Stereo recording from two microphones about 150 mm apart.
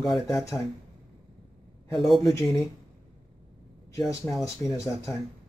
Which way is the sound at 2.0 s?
Centre (ahead or behind).